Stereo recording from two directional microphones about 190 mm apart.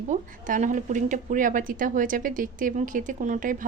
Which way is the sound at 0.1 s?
40° right (ahead or behind).